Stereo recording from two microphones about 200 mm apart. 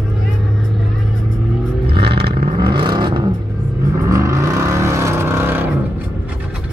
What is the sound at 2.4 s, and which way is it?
Vehicle, 25° right (ahead or behind).